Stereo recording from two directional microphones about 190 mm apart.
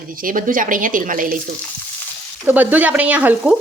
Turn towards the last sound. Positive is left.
turn(degrees=-10)  # may be behind; listen again after turning